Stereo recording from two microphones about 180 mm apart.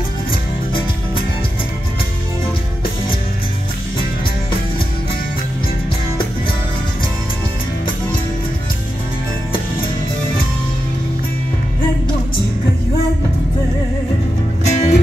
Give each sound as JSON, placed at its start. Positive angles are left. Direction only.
{"t": 0.3, "sound": "music", "side_deg": 30}
{"t": 14.7, "sound": "music", "side_deg": 40}